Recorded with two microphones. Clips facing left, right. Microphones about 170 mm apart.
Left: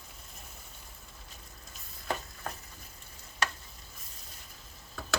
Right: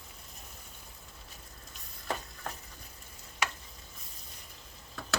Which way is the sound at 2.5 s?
Centre (ahead or behind).